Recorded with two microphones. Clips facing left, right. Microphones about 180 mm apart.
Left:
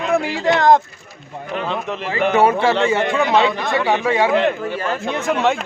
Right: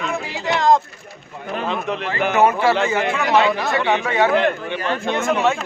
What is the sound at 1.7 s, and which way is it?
Speech, centre (ahead or behind).